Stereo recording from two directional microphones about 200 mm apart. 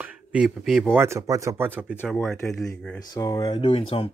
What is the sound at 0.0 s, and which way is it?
Speech, 5° right (ahead or behind).